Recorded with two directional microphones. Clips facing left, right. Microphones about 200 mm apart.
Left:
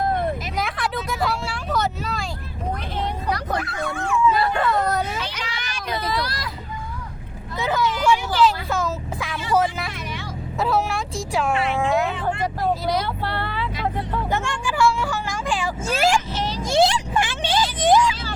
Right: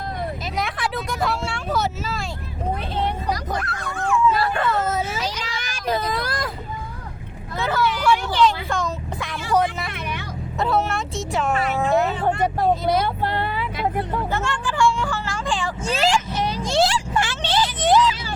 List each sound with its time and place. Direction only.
0.0 s vehicle: 55° left (ahead or behind)
0.5 s vehicle: centre (ahead or behind)
3.2 s bow-wow: 60° left (ahead or behind)
3.6 s dog: 5° left (ahead or behind)
4.4 s dog: 20° left (ahead or behind)
4.6 s vehicle: 5° right (ahead or behind)
5.2 s vehicle: 45° right (ahead or behind)
7.6 s vehicle: 15° left (ahead or behind)
8.4 s vehicle: 5° left (ahead or behind)
10.6 s a sound: centre (ahead or behind)
11.8 s vehicle: centre (ahead or behind)
12.3 s vehicle: 25° right (ahead or behind)
14.3 s vehicle: 15° left (ahead or behind)
16.6 s a sound: 15° left (ahead or behind)